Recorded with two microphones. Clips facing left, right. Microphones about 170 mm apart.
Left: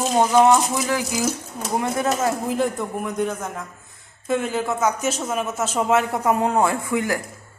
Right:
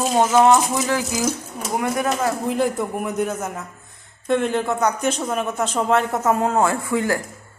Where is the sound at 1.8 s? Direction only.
25° left (ahead or behind).